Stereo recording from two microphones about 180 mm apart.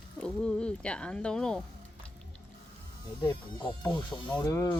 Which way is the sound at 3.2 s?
25° left (ahead or behind).